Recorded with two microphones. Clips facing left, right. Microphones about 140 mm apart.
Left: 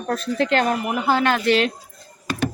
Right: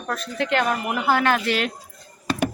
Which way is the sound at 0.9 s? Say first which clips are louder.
Right 1 dB; 20° left (ahead or behind).